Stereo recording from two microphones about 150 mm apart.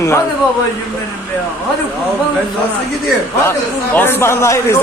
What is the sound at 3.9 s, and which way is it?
Speech, 15° left (ahead or behind).